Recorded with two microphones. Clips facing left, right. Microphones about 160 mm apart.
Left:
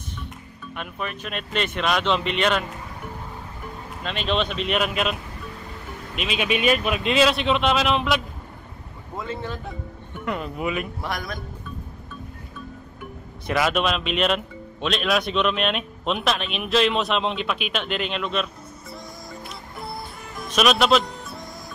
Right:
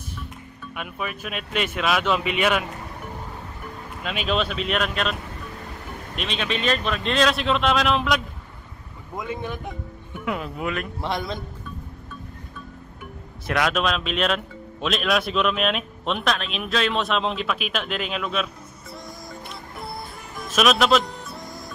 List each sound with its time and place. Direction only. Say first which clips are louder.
0.7 s speech: even; 5° right (ahead or behind)
4.0 s speech: even; 5° right (ahead or behind)
6.1 s speech: left 3 dB; 5° left (ahead or behind)
9.1 s speech: right 1 dB; 15° right (ahead or behind)
10.2 s speech: left 1 dB; centre (ahead or behind)
11.0 s a man's voice: right 3 dB; 25° right (ahead or behind)
13.5 s speech: left 1 dB; centre (ahead or behind)
19.4 s music: left 1 dB; centre (ahead or behind)